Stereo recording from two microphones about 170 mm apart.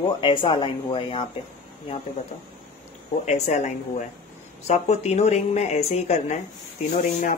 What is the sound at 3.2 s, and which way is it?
Speech, 40° left (ahead or behind).